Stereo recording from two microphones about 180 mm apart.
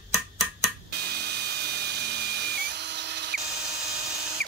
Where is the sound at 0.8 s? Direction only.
65° right (ahead or behind).